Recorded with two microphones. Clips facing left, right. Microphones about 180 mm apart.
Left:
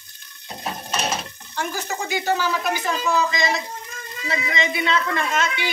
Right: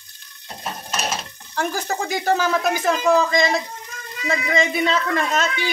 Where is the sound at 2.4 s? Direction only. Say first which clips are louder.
Right 3 dB; 50° right (ahead or behind).